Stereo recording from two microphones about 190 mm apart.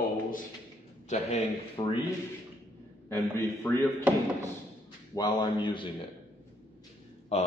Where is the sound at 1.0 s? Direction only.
35° left (ahead or behind).